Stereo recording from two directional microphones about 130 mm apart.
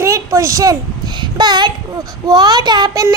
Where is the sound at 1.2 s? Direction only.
35° right (ahead or behind).